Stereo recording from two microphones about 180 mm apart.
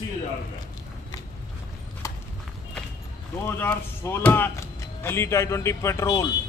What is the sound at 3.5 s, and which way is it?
Speech, 10° left (ahead or behind).